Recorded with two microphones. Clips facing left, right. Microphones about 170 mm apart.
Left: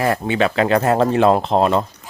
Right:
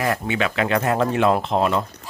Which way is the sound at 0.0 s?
30° left (ahead or behind).